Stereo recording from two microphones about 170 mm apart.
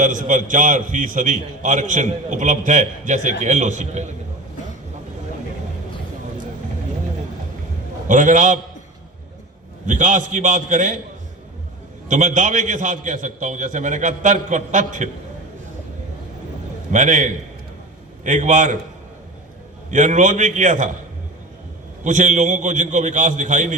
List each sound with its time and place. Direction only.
0.0 s a man's voice: 50° right (ahead or behind)
8.0 s a man's voice: 50° right (ahead or behind)
9.8 s a man's voice: 45° right (ahead or behind)
12.0 s a man's voice: 45° right (ahead or behind)
16.9 s a man's voice: 45° right (ahead or behind)
19.9 s a man's voice: 45° right (ahead or behind)
22.0 s a man's voice: 45° right (ahead or behind)